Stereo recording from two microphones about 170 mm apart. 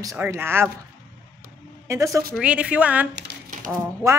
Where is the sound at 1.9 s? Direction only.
20° right (ahead or behind).